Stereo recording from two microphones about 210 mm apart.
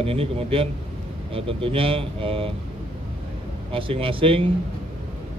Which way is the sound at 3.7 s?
25° right (ahead or behind).